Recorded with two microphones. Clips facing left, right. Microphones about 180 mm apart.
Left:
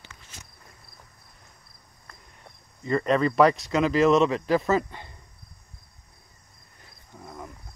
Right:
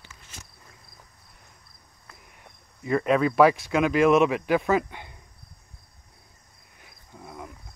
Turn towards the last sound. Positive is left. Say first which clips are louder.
# even
turn(degrees=-5)  # may be behind; listen again after turning